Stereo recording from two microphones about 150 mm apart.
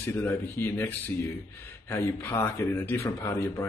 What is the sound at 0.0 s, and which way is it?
Speech, 15° left (ahead or behind).